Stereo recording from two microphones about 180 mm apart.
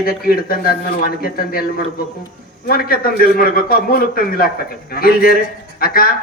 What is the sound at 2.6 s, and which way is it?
A man's voice, 55° left (ahead or behind).